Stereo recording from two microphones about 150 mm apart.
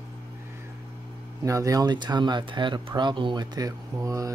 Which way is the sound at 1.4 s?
20° right (ahead or behind).